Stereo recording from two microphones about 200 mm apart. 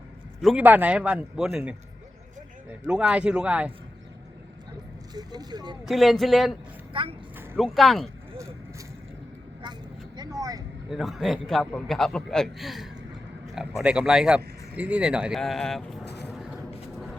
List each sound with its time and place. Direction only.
0.4 s a man's voice: 5° right (ahead or behind)
5.1 s speech: 20° right (ahead or behind)
5.8 s a man's voice: centre (ahead or behind)
6.9 s speech: 25° right (ahead or behind)
7.5 s a man's voice: centre (ahead or behind)
10.2 s vehicle: 20° right (ahead or behind)
10.8 s a man's voice: centre (ahead or behind)
16.0 s a sound: 60° left (ahead or behind)